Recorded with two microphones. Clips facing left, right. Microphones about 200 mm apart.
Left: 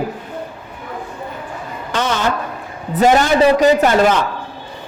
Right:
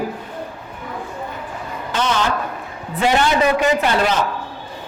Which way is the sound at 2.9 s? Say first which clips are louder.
Left 4 dB; 45° left (ahead or behind).